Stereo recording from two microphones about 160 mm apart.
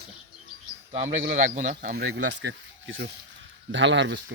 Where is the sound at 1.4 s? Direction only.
50° right (ahead or behind).